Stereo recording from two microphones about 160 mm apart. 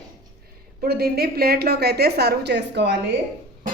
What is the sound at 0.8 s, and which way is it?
A woman's voice, 75° right (ahead or behind).